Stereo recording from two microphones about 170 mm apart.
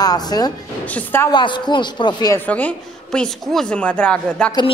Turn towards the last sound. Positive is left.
turn(degrees=5)  # may be behind; listen again after turning